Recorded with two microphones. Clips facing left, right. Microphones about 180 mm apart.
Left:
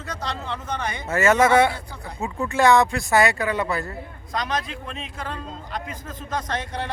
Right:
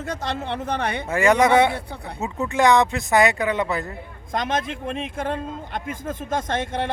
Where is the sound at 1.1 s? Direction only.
15° right (ahead or behind).